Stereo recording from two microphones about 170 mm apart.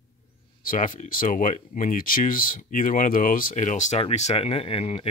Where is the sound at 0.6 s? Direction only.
55° left (ahead or behind).